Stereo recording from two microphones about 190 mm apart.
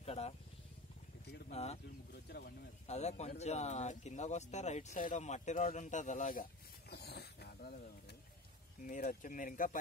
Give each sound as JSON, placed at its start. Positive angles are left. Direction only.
{"t": 0.0, "sound": "vehicle", "side_deg": 35}
{"t": 1.5, "sound": "bird", "side_deg": 35}
{"t": 2.2, "sound": "speech", "side_deg": 55}
{"t": 2.9, "sound": "speech", "side_deg": 35}
{"t": 6.9, "sound": "a sound", "side_deg": 55}
{"t": 8.8, "sound": "speech", "side_deg": 45}